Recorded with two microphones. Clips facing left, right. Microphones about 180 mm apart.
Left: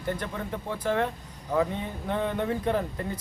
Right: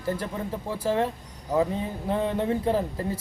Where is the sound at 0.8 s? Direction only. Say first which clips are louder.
Right 2 dB; 30° right (ahead or behind).